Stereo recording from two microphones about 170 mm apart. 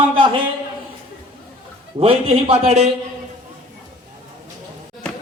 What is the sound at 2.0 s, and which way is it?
Speech, 35° right (ahead or behind).